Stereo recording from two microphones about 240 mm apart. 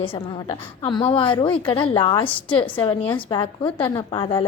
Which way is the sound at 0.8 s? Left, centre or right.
Left.